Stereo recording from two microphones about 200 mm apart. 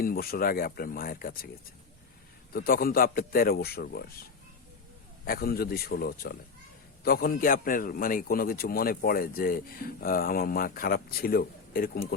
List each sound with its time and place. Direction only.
0.0 s a man's voice: 50° left (ahead or behind)
2.5 s a man's voice: 50° left (ahead or behind)
5.2 s a man's voice: 45° left (ahead or behind)